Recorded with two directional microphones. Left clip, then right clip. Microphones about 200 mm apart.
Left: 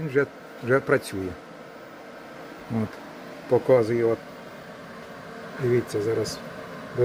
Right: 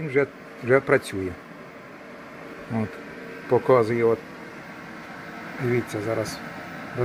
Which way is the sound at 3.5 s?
15° left (ahead or behind).